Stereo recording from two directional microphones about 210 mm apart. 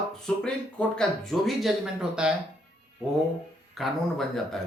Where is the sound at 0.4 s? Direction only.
5° left (ahead or behind).